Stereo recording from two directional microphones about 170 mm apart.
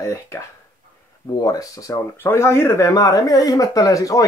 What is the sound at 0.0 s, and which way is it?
Speech, 15° left (ahead or behind).